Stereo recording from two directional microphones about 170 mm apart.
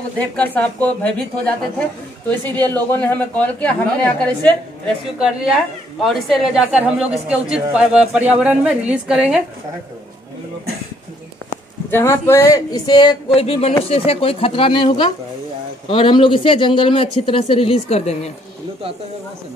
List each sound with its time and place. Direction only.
0.2 s speech: 10° left (ahead or behind)
2.5 s speech: 10° left (ahead or behind)
5.2 s speech: centre (ahead or behind)
11.9 s speech: 15° left (ahead or behind); by 18.3 s 40° left (ahead or behind)